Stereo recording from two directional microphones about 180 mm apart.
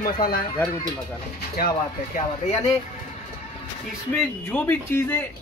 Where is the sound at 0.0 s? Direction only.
55° left (ahead or behind).